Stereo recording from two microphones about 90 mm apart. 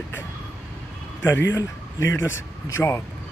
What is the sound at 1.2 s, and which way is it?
Speech, 30° left (ahead or behind).